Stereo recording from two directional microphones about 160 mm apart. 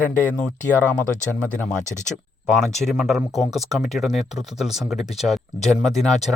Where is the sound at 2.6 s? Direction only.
Centre (ahead or behind).